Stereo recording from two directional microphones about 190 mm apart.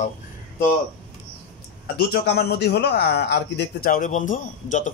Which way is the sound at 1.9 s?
55° left (ahead or behind).